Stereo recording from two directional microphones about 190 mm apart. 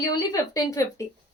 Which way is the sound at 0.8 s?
15° left (ahead or behind).